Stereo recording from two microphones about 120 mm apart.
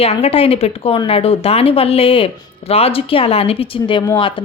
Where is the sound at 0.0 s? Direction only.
55° left (ahead or behind).